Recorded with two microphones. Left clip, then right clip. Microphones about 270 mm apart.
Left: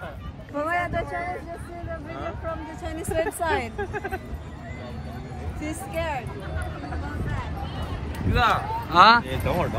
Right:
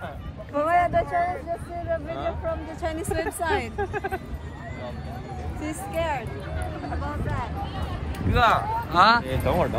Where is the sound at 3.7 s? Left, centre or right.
Right.